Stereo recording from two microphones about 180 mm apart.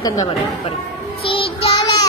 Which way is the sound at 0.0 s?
20° left (ahead or behind).